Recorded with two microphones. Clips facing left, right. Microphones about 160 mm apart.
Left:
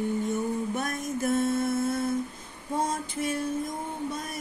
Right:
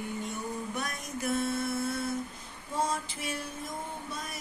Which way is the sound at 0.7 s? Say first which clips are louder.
Left 6 dB; 50° left (ahead or behind).